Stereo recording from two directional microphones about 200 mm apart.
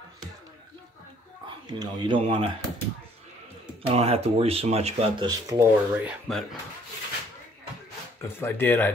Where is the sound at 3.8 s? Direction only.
30° right (ahead or behind).